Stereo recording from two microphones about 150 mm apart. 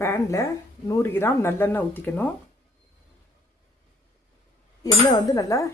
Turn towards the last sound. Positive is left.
turn(degrees=20)  # may be behind; listen again after turning